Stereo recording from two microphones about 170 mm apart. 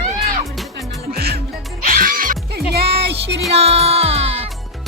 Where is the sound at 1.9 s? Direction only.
55° right (ahead or behind).